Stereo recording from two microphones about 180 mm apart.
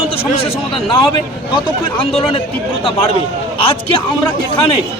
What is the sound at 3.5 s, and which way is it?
Speech, 30° left (ahead or behind).